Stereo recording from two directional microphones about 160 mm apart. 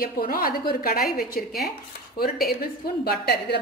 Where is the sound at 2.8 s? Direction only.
75° left (ahead or behind).